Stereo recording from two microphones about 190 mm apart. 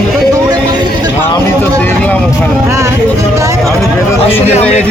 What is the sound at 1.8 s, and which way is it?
Vehicle, 10° left (ahead or behind).